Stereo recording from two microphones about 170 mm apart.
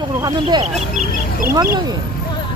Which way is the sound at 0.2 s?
25° right (ahead or behind).